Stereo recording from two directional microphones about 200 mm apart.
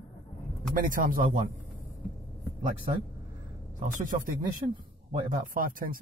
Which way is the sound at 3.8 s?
40° right (ahead or behind).